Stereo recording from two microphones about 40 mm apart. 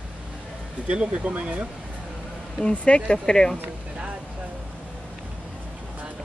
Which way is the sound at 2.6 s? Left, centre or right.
Left.